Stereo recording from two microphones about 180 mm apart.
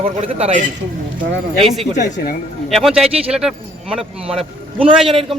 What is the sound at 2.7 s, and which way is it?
Speech, centre (ahead or behind).